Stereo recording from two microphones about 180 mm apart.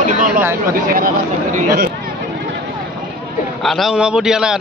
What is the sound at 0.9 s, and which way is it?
Speech, 50° right (ahead or behind).